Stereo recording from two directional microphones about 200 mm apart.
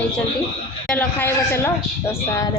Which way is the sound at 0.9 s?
10° left (ahead or behind).